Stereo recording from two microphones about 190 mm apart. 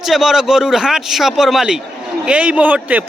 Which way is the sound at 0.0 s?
Centre (ahead or behind).